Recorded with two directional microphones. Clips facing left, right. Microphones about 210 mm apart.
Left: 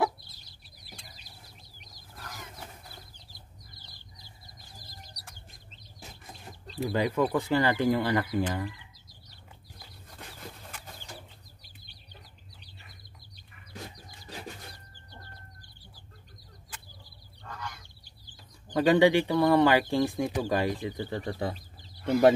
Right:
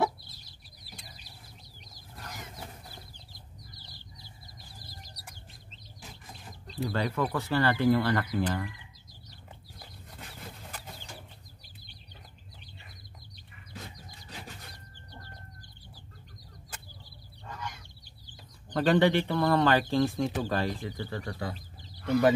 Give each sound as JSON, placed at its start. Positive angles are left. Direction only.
{"t": 6.8, "sound": "speech", "side_deg": 15}
{"t": 18.7, "sound": "speech", "side_deg": 10}